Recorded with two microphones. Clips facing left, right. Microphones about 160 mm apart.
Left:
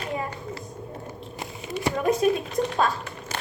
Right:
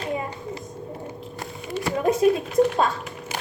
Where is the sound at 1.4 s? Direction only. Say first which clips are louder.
Right 2 dB; 15° left (ahead or behind).